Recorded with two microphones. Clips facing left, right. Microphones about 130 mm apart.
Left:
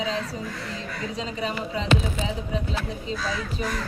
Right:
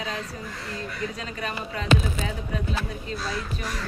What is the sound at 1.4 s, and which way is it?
Speech, 25° left (ahead or behind).